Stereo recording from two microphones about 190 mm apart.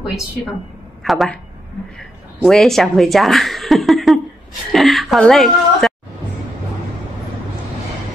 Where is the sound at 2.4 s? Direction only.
Centre (ahead or behind).